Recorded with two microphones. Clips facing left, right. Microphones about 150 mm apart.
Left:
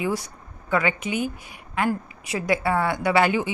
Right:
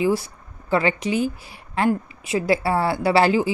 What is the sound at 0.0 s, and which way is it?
Speech, 30° right (ahead or behind).